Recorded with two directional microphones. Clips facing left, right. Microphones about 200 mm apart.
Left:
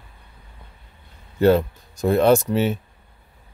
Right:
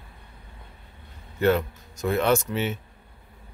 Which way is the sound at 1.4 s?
35° left (ahead or behind).